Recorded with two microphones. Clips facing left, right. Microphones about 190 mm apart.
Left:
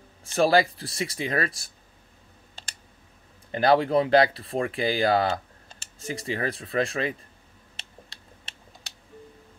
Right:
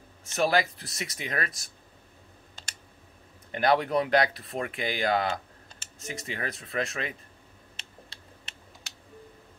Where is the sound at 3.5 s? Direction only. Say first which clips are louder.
Left 4 dB; 30° left (ahead or behind).